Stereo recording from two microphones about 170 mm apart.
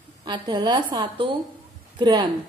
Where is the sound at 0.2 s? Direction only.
25° right (ahead or behind).